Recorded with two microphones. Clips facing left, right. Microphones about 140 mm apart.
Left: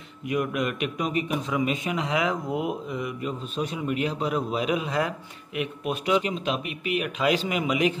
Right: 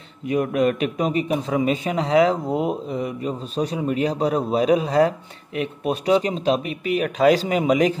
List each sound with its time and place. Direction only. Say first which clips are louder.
0.3 s a man's voice: right 7 dB; 35° right (ahead or behind)